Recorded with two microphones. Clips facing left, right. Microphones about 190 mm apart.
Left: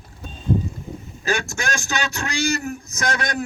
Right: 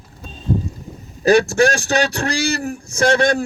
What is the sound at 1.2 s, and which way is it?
A man's voice, 35° right (ahead or behind).